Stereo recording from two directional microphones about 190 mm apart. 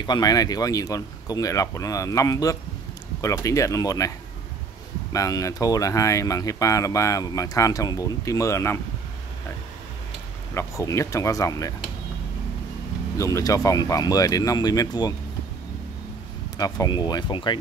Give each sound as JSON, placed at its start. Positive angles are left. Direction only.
{"t": 0.0, "sound": "speech", "side_deg": 20}
{"t": 5.1, "sound": "speech", "side_deg": 15}
{"t": 10.5, "sound": "speech", "side_deg": 15}
{"t": 13.2, "sound": "speech", "side_deg": 15}
{"t": 16.5, "sound": "speech", "side_deg": 20}